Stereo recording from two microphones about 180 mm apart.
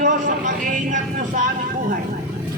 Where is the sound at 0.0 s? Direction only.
45° right (ahead or behind).